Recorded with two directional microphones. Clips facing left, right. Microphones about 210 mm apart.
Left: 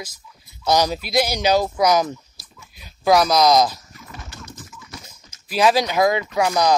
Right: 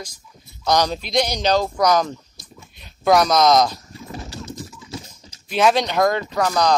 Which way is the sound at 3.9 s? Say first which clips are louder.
Right 6 dB; 30° right (ahead or behind).